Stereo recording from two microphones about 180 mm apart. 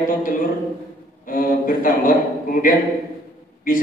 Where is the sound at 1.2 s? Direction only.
50° left (ahead or behind).